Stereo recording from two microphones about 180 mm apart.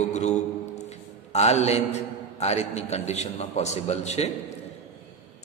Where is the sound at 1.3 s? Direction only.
35° left (ahead or behind).